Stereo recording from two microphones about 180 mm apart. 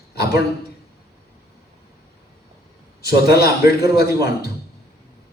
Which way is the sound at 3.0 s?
60° left (ahead or behind).